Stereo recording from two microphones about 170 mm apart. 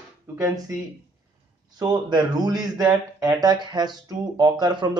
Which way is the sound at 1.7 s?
25° right (ahead or behind).